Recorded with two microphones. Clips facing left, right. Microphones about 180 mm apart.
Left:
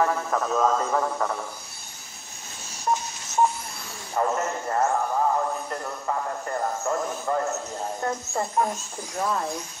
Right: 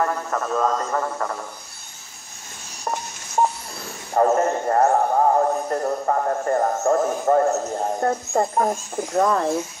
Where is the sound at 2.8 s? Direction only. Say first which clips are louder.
Left 2 dB; 60° right (ahead or behind).